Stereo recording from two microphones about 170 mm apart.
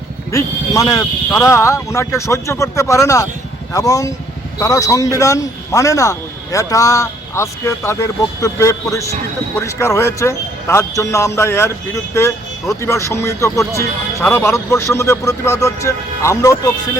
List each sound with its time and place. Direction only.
0.3 s a man's voice: 20° left (ahead or behind)